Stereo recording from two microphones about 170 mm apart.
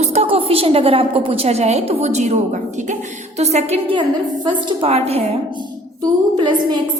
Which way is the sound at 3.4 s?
40° right (ahead or behind).